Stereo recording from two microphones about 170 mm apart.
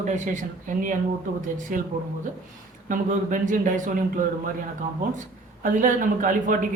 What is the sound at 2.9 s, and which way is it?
Speech, 50° right (ahead or behind).